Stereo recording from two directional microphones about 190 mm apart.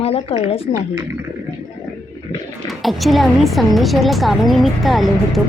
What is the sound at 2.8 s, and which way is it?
A woman's voice, centre (ahead or behind).